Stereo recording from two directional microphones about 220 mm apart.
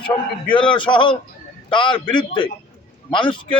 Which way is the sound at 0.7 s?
20° left (ahead or behind).